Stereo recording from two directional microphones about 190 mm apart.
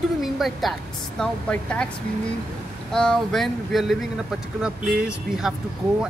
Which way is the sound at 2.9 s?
Centre (ahead or behind).